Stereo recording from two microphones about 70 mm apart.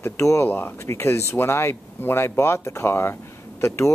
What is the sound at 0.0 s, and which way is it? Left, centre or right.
Speech, left.